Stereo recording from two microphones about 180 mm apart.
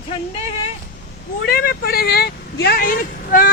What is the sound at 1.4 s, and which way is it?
Speech, 55° left (ahead or behind).